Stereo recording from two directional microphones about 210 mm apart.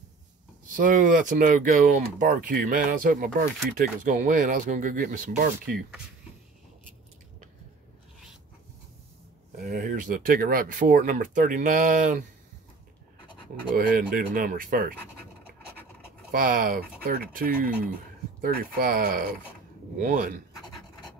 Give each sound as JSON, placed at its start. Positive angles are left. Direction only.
{"t": 0.7, "sound": "speech", "side_deg": -40}
{"t": 9.6, "sound": "speech", "side_deg": -40}
{"t": 13.7, "sound": "speech", "side_deg": -45}
{"t": 16.3, "sound": "speech", "side_deg": -40}